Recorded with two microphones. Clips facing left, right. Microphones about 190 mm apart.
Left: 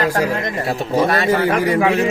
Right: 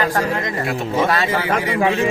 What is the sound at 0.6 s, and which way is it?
Speech, 35° left (ahead or behind).